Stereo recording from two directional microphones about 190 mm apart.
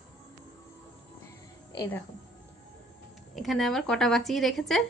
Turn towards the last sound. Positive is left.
turn(degrees=0)  # may be behind; listen again after turning